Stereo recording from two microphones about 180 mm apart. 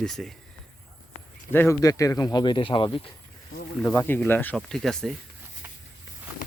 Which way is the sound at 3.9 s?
10° left (ahead or behind).